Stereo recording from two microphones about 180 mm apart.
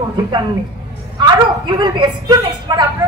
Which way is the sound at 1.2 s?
25° right (ahead or behind).